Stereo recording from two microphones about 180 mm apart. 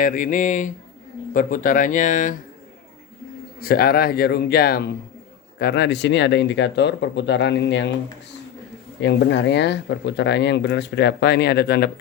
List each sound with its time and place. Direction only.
0.0 s speech: 45° left (ahead or behind)
3.6 s a man's voice: 55° left (ahead or behind); by 7.9 s 75° left (ahead or behind)
9.0 s speech: 75° left (ahead or behind); by 11.9 s 60° left (ahead or behind)